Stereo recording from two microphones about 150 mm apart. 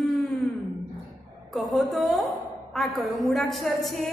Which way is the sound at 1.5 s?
Centre (ahead or behind).